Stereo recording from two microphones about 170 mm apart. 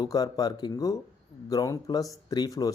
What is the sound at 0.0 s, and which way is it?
Speech, 20° left (ahead or behind).